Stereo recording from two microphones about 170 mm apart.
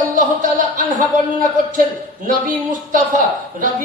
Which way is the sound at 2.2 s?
50° right (ahead or behind).